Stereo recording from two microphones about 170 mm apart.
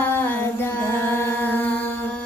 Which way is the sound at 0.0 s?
10° left (ahead or behind).